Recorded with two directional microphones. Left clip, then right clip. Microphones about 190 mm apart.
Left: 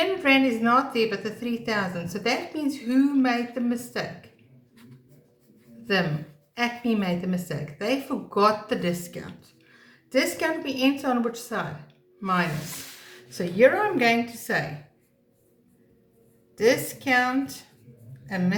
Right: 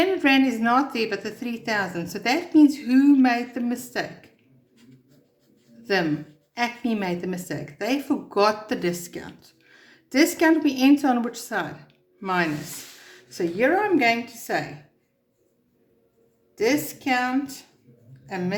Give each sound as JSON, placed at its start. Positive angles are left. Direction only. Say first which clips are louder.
{"t": 0.0, "sound": "a woman's voice", "louder": "right 1 dB", "side_deg": -45}
{"t": 6.5, "sound": "a woman's voice", "louder": "even", "side_deg": -40}
{"t": 13.3, "sound": "a woman's voice", "louder": "left 2 dB", "side_deg": -35}
{"t": 16.6, "sound": "a woman's voice", "louder": "left 1 dB", "side_deg": -30}